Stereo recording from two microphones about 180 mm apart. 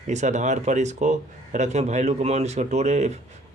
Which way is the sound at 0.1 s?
40° right (ahead or behind).